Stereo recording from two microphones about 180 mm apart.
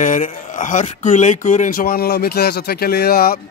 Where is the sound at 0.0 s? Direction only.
45° left (ahead or behind).